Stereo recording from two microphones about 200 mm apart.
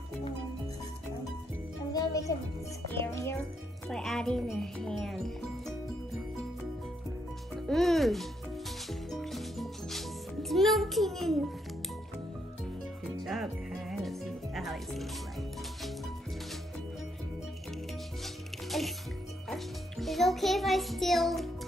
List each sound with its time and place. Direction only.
1.9 s music: 15° left (ahead or behind)
3.0 s a child's voice: 10° left (ahead or behind)
7.6 s speech: centre (ahead or behind)
9.1 s music: centre (ahead or behind)
10.5 s a child's voice: centre (ahead or behind)
13.2 s music: centre (ahead or behind)
18.2 s music: centre (ahead or behind)
19.5 s a child's voice: centre (ahead or behind)